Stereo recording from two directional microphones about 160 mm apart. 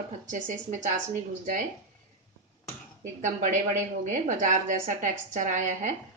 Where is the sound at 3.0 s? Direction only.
55° right (ahead or behind).